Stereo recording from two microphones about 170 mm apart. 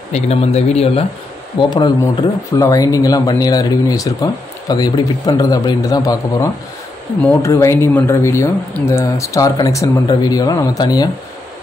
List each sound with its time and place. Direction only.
0.1 s speech: 40° left (ahead or behind); by 11.1 s 20° left (ahead or behind)